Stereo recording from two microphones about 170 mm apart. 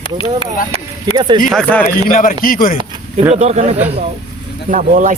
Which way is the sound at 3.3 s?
40° right (ahead or behind).